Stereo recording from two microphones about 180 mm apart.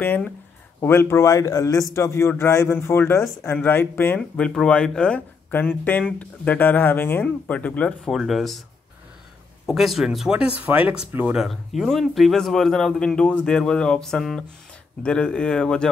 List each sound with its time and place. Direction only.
0.0 s speech: 10° left (ahead or behind)
9.7 s speech: centre (ahead or behind)